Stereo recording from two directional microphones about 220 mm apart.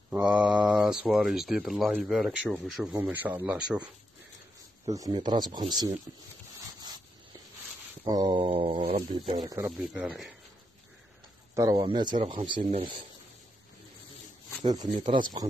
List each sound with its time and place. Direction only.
0.1 s speech: 5° right (ahead or behind)
2.9 s speech: 10° right (ahead or behind)
4.8 s speech: 15° right (ahead or behind)
8.0 s speech: 20° right (ahead or behind)
9.7 s speech: centre (ahead or behind)
11.5 s speech: 15° right (ahead or behind)
14.6 s speech: 15° right (ahead or behind)